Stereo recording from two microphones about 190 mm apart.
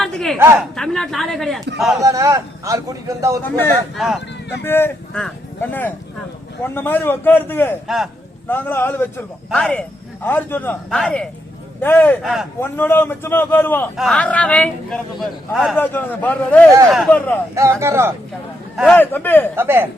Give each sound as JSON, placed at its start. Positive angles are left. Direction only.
{"t": 0.0, "sound": "a sound", "side_deg": 0}
{"t": 0.3, "sound": "a man's voice", "side_deg": -15}
{"t": 0.8, "sound": "speech", "side_deg": 0}
{"t": 2.0, "sound": "a man's voice", "side_deg": -15}
{"t": 3.4, "sound": "a man's voice", "side_deg": 10}
{"t": 3.9, "sound": "speech", "side_deg": 0}
{"t": 4.6, "sound": "a man's voice", "side_deg": 10}
{"t": 7.9, "sound": "speech", "side_deg": 0}
{"t": 8.4, "sound": "a man's voice", "side_deg": 10}
{"t": 12.2, "sound": "speech", "side_deg": 0}
{"t": 12.5, "sound": "a man's voice", "side_deg": 10}
{"t": 17.5, "sound": "a man's voice", "side_deg": -15}
{"t": 18.9, "sound": "a man's voice", "side_deg": 10}
{"t": 19.5, "sound": "a man's voice", "side_deg": -10}